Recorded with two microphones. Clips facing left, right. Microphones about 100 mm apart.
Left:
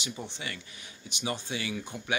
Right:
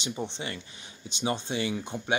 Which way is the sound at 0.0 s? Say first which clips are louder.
Right 5 dB; 25° right (ahead or behind).